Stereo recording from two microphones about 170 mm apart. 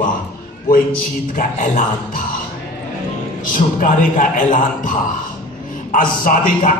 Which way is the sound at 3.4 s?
50° left (ahead or behind).